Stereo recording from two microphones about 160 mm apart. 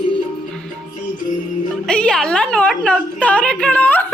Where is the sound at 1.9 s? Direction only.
5° left (ahead or behind).